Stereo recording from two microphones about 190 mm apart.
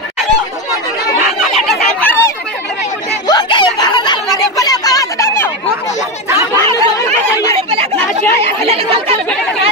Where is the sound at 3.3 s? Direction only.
25° left (ahead or behind).